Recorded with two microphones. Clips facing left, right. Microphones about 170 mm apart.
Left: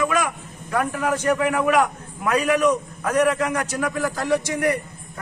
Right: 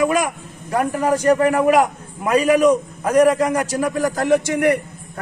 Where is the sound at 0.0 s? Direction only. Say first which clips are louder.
Right 4 dB; 35° right (ahead or behind).